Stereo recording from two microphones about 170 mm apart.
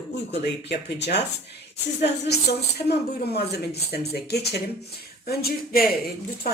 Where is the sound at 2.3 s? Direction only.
70° left (ahead or behind).